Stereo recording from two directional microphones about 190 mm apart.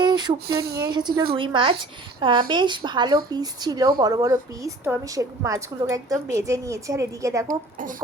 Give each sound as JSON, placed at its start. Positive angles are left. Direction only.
{"t": 0.0, "sound": "a sound", "side_deg": -25}
{"t": 0.4, "sound": "speech", "side_deg": -55}
{"t": 0.8, "sound": "a woman's voice", "side_deg": -25}